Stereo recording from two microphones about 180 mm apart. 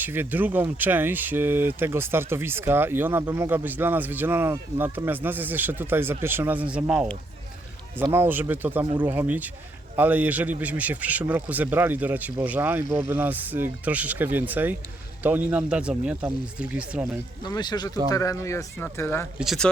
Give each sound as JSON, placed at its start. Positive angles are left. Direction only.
{"t": 0.0, "sound": "speech", "side_deg": -10}
{"t": 17.4, "sound": "speech", "side_deg": 25}
{"t": 19.4, "sound": "speech", "side_deg": 0}